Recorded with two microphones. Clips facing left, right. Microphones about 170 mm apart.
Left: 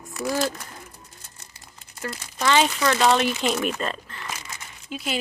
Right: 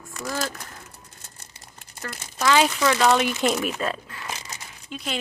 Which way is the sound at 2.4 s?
Centre (ahead or behind).